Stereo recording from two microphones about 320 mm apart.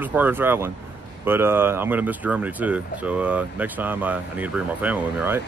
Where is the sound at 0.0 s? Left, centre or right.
Centre.